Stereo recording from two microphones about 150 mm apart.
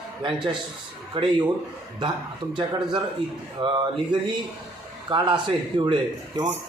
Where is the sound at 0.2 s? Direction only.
35° right (ahead or behind).